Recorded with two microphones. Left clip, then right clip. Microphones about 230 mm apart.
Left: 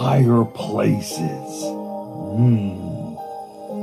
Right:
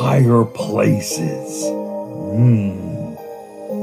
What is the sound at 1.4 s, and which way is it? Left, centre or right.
Music, right.